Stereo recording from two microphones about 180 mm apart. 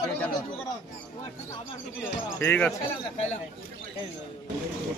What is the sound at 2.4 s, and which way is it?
Speech, 10° left (ahead or behind).